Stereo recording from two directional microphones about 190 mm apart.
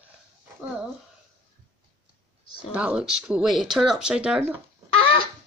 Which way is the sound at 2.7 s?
5° right (ahead or behind).